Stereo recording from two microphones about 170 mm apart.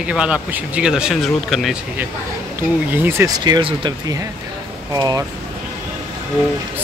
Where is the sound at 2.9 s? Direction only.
10° right (ahead or behind).